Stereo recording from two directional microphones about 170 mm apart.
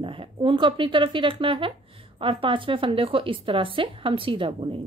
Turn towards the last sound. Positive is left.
turn(degrees=-30)  # may be behind; listen again after turning